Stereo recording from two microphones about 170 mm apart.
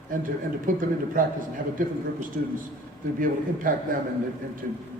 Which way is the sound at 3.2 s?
55° right (ahead or behind).